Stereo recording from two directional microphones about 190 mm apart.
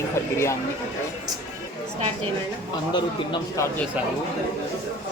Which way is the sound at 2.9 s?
20° left (ahead or behind).